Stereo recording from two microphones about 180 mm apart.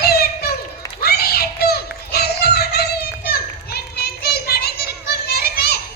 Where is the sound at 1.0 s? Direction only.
60° left (ahead or behind).